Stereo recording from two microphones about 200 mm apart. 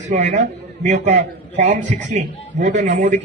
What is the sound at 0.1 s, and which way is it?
A man's voice, 35° right (ahead or behind).